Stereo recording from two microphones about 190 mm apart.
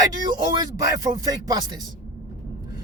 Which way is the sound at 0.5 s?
20° right (ahead or behind).